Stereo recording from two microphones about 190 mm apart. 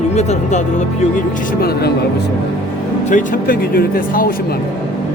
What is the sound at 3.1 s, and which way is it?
A man's voice, 45° left (ahead or behind).